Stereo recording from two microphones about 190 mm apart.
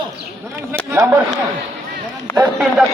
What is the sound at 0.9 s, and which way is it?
Speech, 15° right (ahead or behind).